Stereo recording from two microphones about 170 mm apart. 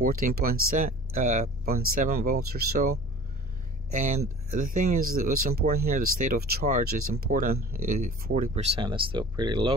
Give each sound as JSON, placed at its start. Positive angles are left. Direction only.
{"t": 0.0, "sound": "speech", "side_deg": -60}
{"t": 3.9, "sound": "speech", "side_deg": -45}
{"t": 8.6, "sound": "speech", "side_deg": -30}